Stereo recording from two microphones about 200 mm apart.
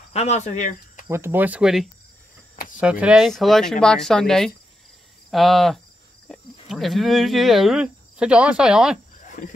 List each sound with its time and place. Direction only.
0.1 s speech: 35° left (ahead or behind)
1.0 s speech: 15° right (ahead or behind)